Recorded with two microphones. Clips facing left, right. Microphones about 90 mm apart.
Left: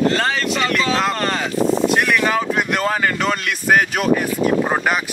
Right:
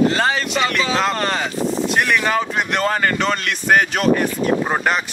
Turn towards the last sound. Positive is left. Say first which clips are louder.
# left 1 dB
turn(degrees=5)  # may be behind; listen again after turning